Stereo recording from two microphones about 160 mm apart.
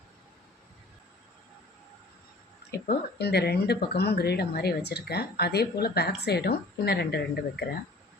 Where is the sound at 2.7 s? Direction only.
90° left.